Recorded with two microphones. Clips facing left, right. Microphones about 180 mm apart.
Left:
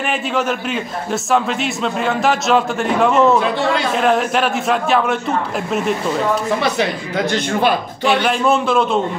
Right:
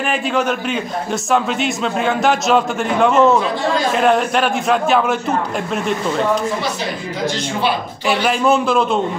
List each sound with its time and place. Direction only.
0.1 s a man's voice: centre (ahead or behind)
6.6 s speech: 60° left (ahead or behind)
8.0 s a man's voice: centre (ahead or behind)